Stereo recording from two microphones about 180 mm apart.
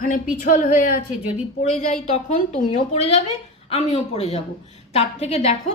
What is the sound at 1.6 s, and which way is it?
A woman's voice, 40° left (ahead or behind).